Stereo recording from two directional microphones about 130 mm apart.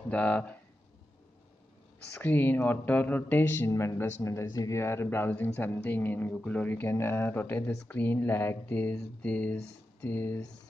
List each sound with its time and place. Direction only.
0.1 s speech: 10° left (ahead or behind)
2.1 s speech: 15° left (ahead or behind)